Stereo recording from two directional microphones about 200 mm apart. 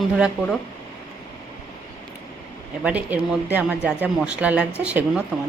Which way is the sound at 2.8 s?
5° right (ahead or behind).